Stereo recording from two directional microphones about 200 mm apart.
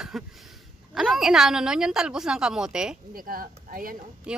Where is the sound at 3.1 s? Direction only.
45° right (ahead or behind).